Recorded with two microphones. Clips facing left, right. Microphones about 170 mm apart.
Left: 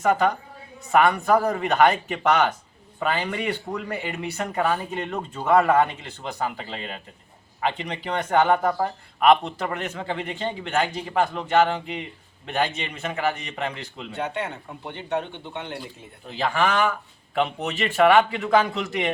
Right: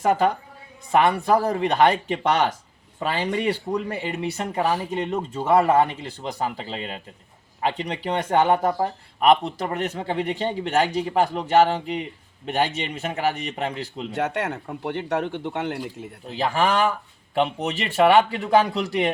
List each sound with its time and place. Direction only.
0.0 s speech: 30° right (ahead or behind)
13.6 s speech: 30° right (ahead or behind)
14.1 s speech: 85° right
16.4 s speech: 35° right (ahead or behind)